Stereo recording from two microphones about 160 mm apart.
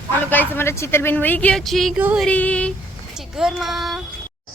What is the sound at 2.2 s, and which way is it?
Speech, 10° left (ahead or behind).